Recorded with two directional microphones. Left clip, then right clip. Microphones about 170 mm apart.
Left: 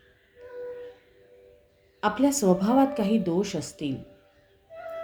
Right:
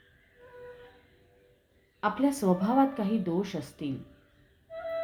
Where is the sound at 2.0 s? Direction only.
15° left (ahead or behind).